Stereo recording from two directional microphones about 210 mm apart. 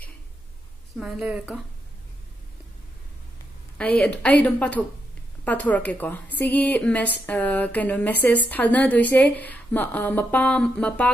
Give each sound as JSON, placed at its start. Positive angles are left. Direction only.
{"t": 0.9, "sound": "a woman's voice", "side_deg": -5}
{"t": 3.7, "sound": "a woman's voice", "side_deg": 5}